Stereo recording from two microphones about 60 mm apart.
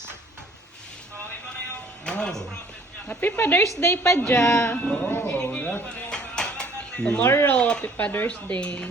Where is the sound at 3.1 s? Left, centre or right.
Left.